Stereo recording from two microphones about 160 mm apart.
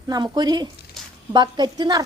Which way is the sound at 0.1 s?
25° right (ahead or behind).